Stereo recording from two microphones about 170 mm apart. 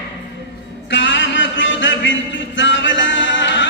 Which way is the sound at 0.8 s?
90° left.